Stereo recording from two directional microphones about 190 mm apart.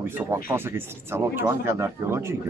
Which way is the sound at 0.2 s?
10° right (ahead or behind).